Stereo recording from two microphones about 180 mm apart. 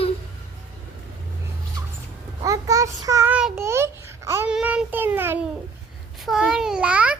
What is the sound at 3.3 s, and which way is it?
Babbling, 10° right (ahead or behind).